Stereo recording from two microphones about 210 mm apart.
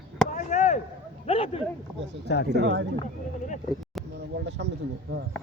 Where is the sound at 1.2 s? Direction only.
25° left (ahead or behind).